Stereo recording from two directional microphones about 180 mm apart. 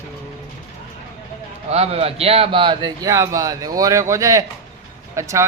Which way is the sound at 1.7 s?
35° right (ahead or behind).